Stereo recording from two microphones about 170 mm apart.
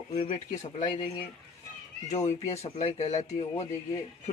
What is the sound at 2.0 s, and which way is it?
A man's voice, 40° left (ahead or behind).